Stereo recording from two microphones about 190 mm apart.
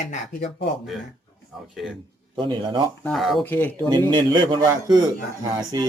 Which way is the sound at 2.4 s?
25° right (ahead or behind).